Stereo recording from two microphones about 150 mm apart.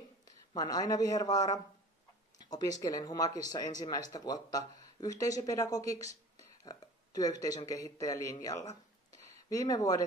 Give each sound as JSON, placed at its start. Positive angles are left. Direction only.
{"t": 0.6, "sound": "a man's voice", "side_deg": 25}
{"t": 9.1, "sound": "a sound", "side_deg": -45}
{"t": 9.5, "sound": "a man's voice", "side_deg": 25}